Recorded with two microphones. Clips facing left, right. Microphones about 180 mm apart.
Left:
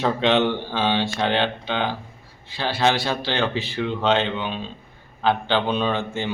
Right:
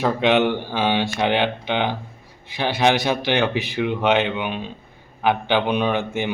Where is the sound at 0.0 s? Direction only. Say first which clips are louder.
Right 2 dB; 10° right (ahead or behind).